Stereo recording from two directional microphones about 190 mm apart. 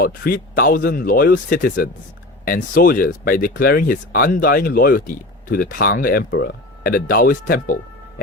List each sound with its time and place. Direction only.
0.0 s speech: 50° left (ahead or behind)